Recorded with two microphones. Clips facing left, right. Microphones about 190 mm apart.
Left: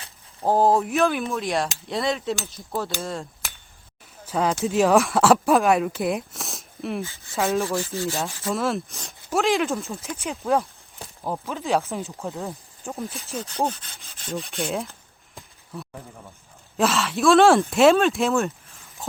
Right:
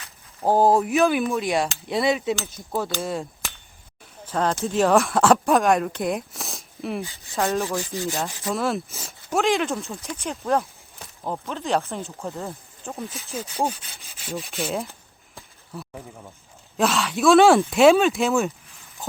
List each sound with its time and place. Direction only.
0.4 s speech: centre (ahead or behind)
4.3 s speech: 5° left (ahead or behind)
7.0 s rub: 15° right (ahead or behind)
7.3 s speech: centre (ahead or behind)
7.6 s rub: 15° right (ahead or behind)
8.5 s speech: centre (ahead or behind)
12.2 s speech: centre (ahead or behind)
15.4 s a sound: centre (ahead or behind)
16.7 s speech: centre (ahead or behind)